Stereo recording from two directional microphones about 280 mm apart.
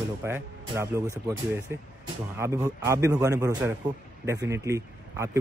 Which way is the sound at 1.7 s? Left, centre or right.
Right.